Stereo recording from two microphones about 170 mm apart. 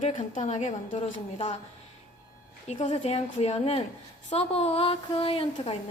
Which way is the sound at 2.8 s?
40° left (ahead or behind).